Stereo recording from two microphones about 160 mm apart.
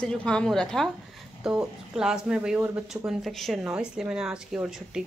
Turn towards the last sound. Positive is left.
turn(degrees=-5)  # may be behind; listen again after turning